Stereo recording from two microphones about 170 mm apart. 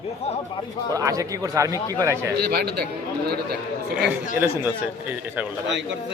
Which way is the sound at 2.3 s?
70° right (ahead or behind).